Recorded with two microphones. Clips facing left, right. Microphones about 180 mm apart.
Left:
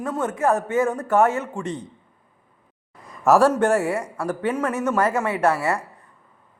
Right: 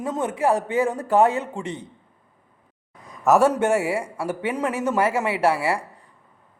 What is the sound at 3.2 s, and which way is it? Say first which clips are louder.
A man's voice: left 1 dB; centre (ahead or behind).